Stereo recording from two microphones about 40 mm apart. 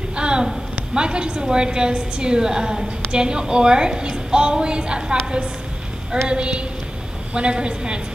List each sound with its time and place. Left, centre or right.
0.1 s a sound: right
0.9 s a woman's voice: right
6.2 s a woman's voice: right